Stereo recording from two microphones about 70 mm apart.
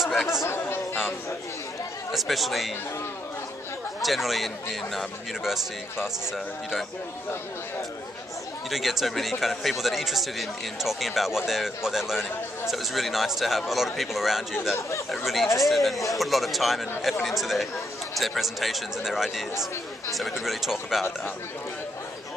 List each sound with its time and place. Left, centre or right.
0.4 s chatter: left
2.1 s speech: centre
4.0 s speech: centre
8.6 s speech: centre
20.4 s speech: centre